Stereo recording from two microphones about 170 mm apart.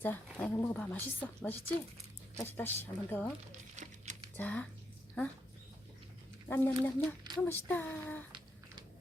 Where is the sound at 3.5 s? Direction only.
45° right (ahead or behind).